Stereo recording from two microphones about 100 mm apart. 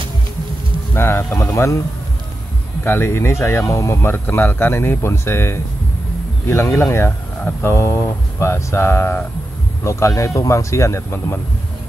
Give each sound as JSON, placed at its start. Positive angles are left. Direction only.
{"t": 0.9, "sound": "speech", "side_deg": 25}
{"t": 2.8, "sound": "speech", "side_deg": 20}